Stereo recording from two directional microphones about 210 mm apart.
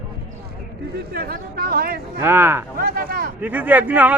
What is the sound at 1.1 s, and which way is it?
Speech, 45° right (ahead or behind).